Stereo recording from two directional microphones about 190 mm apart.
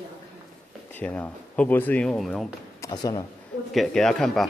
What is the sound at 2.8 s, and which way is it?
Speech, 20° left (ahead or behind).